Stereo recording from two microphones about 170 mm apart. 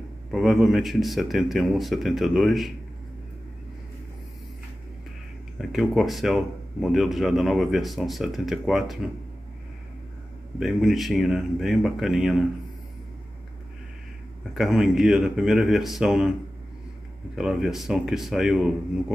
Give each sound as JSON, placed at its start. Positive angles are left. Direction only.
{"t": 0.3, "sound": "speech", "side_deg": 0}
{"t": 5.6, "sound": "speech", "side_deg": 0}
{"t": 10.6, "sound": "speech", "side_deg": 0}
{"t": 14.5, "sound": "speech", "side_deg": 0}
{"t": 17.4, "sound": "speech", "side_deg": 0}